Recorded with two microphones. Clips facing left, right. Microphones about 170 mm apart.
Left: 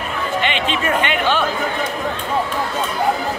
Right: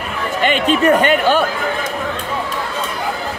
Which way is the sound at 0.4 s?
45° right (ahead or behind).